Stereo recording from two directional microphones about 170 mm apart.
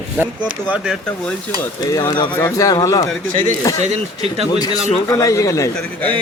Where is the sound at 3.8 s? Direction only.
40° right (ahead or behind).